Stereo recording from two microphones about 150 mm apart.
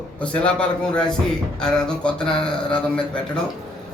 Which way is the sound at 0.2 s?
5° left (ahead or behind).